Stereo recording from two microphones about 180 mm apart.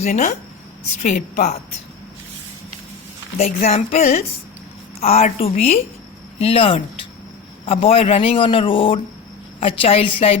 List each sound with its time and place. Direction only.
0.0 s a man's voice: 40° left (ahead or behind)
3.3 s a man's voice: 40° left (ahead or behind)